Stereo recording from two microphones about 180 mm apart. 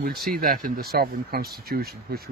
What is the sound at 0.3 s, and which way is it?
Speech, 55° right (ahead or behind).